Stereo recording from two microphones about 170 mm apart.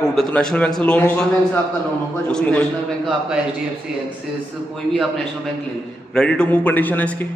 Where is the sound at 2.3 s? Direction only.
5° left (ahead or behind).